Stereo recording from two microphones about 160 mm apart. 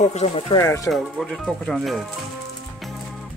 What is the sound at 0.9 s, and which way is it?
Speech, centre (ahead or behind).